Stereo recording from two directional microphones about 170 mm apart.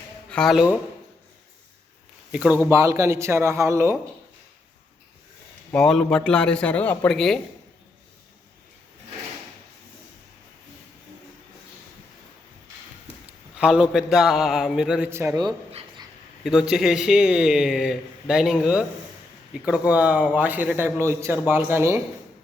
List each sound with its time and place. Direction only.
0.3 s speech: 5° left (ahead or behind)
2.3 s speech: 5° right (ahead or behind)
2.6 s a man's voice: 15° right (ahead or behind)
5.7 s speech: 5° left (ahead or behind)
13.6 s speech: 5° right (ahead or behind)
15.1 s a man's voice: 15° right (ahead or behind)
16.4 s a man's voice: 5° right (ahead or behind)